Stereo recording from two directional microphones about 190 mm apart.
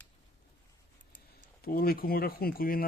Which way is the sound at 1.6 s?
50° left (ahead or behind).